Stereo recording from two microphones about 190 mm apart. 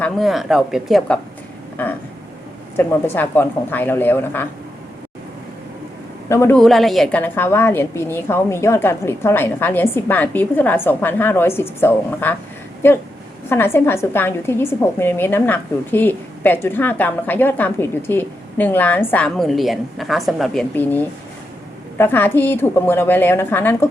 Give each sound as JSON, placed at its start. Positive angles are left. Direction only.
{"t": 0.0, "sound": "a woman's voice", "side_deg": 0}
{"t": 6.2, "sound": "a man's voice", "side_deg": 15}
{"t": 6.6, "sound": "a woman's voice", "side_deg": 0}